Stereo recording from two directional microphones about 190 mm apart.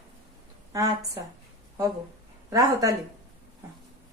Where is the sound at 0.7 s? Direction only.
20° right (ahead or behind).